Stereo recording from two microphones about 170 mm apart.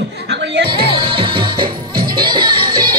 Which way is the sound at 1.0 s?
30° right (ahead or behind).